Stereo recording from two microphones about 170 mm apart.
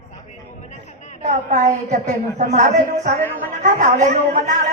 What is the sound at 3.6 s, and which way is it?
A woman's voice, 45° right (ahead or behind).